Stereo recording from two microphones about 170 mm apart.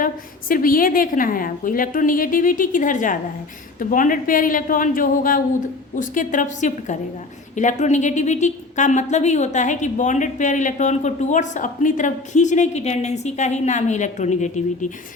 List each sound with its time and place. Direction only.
0.0 s a woman's voice: 55° left (ahead or behind)